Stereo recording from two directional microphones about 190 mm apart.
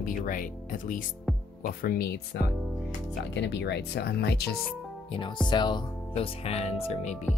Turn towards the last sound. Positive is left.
turn(degrees=35)  # may be behind; listen again after turning